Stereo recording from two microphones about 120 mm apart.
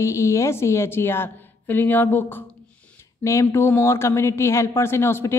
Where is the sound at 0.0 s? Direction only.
25° left (ahead or behind).